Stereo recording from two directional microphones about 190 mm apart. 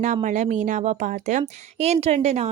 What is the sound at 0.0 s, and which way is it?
A woman's voice, 40° right (ahead or behind).